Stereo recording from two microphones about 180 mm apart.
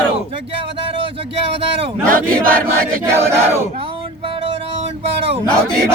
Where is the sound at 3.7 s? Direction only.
30° right (ahead or behind).